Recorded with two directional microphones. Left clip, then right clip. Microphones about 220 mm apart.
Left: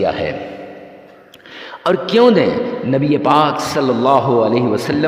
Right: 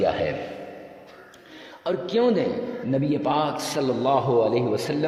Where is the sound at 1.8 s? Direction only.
40° left (ahead or behind).